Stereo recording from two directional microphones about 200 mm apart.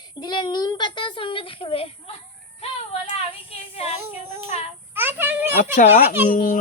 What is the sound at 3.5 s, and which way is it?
Speech, 30° left (ahead or behind).